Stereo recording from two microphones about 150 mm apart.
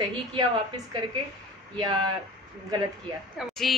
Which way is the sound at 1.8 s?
30° right (ahead or behind).